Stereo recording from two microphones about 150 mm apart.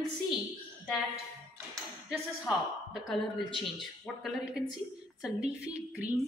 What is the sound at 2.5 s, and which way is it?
A woman's voice, centre (ahead or behind).